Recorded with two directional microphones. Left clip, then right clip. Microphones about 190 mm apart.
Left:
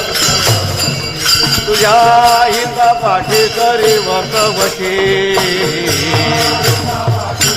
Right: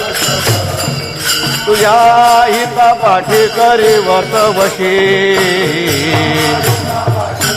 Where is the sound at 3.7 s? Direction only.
50° right (ahead or behind).